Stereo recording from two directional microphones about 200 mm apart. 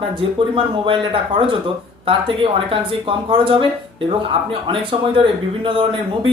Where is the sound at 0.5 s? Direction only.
25° right (ahead or behind).